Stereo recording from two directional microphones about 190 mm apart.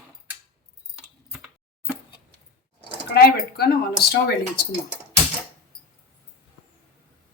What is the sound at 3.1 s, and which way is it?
Speech, 55° left (ahead or behind).